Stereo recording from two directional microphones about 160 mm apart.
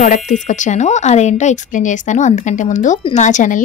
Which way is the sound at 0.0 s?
50° left (ahead or behind).